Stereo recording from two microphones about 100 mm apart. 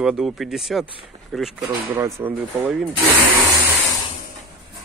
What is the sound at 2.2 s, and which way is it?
Speech, 20° right (ahead or behind).